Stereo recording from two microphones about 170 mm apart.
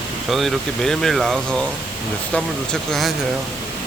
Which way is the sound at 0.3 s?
Centre (ahead or behind).